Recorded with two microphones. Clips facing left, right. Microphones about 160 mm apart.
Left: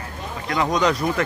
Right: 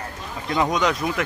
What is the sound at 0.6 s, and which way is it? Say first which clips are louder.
Speech: left 6 dB; 5° right (ahead or behind).